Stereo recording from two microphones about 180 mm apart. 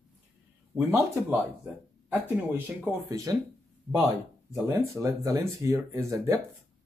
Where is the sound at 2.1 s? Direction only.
15° right (ahead or behind).